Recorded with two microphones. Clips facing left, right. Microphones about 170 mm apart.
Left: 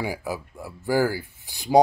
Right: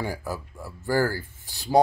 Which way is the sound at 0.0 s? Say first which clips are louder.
Left 2 dB; 10° left (ahead or behind).